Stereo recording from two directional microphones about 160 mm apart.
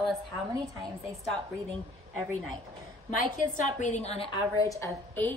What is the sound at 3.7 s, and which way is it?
Speech, 45° left (ahead or behind).